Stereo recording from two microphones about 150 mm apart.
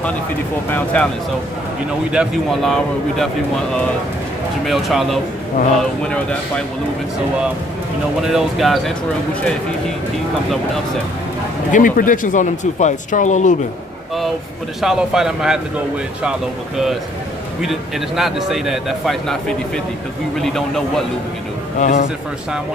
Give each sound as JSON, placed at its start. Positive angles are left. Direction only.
{"t": 0.7, "sound": "a man's voice", "side_deg": 10}
{"t": 2.0, "sound": "speech", "side_deg": -5}
{"t": 4.6, "sound": "a man's voice", "side_deg": 0}
{"t": 8.2, "sound": "speech", "side_deg": -5}
{"t": 11.7, "sound": "speech", "side_deg": 65}
{"t": 14.8, "sound": "speech", "side_deg": -5}
{"t": 20.3, "sound": "speech", "side_deg": 0}
{"t": 21.7, "sound": "a man's voice", "side_deg": 55}